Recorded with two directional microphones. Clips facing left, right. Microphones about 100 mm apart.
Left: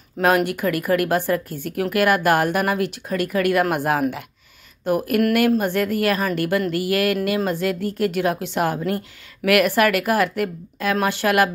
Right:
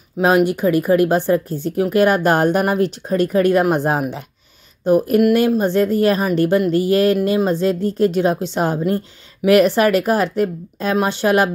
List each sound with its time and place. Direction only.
0.2 s speech: 20° right (ahead or behind)